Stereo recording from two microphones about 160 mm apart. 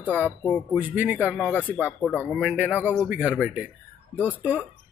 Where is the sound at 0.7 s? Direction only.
10° right (ahead or behind).